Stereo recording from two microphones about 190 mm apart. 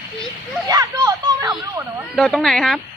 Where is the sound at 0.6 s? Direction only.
20° right (ahead or behind).